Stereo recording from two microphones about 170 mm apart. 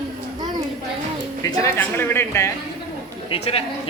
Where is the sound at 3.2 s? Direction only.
35° left (ahead or behind).